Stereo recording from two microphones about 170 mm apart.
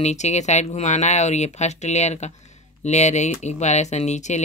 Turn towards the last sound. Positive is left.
turn(degrees=45)  # may be behind; listen again after turning